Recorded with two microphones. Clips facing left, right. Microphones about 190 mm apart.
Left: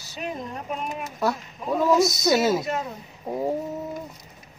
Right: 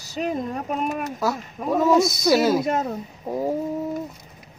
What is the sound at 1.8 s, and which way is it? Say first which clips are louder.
Speech: right 1 dB; centre (ahead or behind).